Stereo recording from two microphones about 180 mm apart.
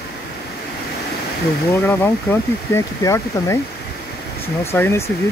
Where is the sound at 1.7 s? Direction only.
15° left (ahead or behind).